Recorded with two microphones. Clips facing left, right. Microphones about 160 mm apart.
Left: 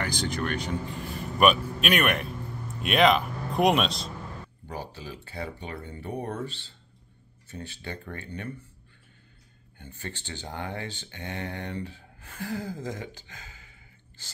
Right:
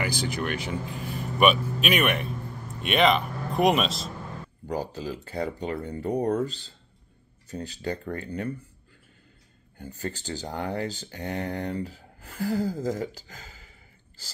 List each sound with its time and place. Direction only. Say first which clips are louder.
0.0 s speech: right 1 dB; 5° right (ahead or behind)
4.6 s speech: right 8 dB; 40° right (ahead or behind)
9.8 s speech: right 6 dB; 40° right (ahead or behind)